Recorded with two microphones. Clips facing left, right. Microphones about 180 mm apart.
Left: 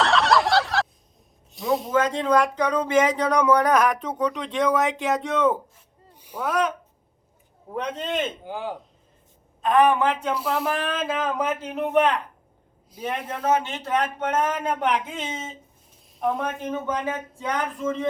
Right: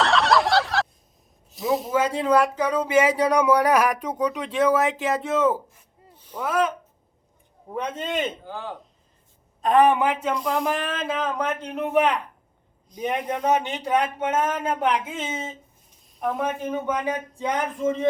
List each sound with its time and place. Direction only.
0.0 s a sound: centre (ahead or behind)
1.5 s speech: centre (ahead or behind)
6.1 s a sound: 10° left (ahead or behind)
6.4 s a man's voice: centre (ahead or behind)
8.4 s speech: 15° left (ahead or behind)
9.6 s a woman's voice: 35° right (ahead or behind)
10.0 s speech: 10° right (ahead or behind)
10.3 s a man's voice: 5° left (ahead or behind)
13.0 s speech: 15° right (ahead or behind); by 16.5 s centre (ahead or behind)
16.5 s speech: 10° right (ahead or behind)